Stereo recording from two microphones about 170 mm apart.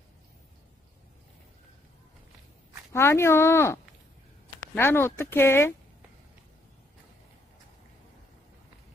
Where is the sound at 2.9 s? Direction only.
15° left (ahead or behind).